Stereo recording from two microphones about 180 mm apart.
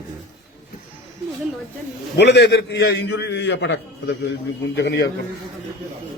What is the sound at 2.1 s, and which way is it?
A man's voice, 70° left (ahead or behind).